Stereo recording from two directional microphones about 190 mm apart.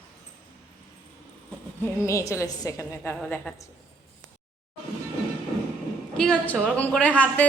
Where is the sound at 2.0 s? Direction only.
15° left (ahead or behind).